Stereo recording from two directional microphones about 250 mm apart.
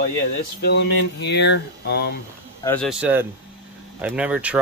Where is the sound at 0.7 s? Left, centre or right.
Left.